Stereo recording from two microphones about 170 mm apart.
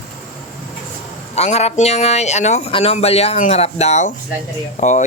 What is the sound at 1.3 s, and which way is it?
A man's voice, 40° left (ahead or behind).